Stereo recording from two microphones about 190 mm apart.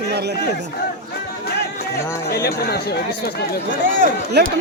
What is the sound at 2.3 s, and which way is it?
Speech, 55° left (ahead or behind).